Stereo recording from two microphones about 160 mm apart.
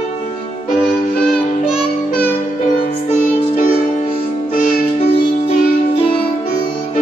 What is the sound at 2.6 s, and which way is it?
Music, 40° left (ahead or behind).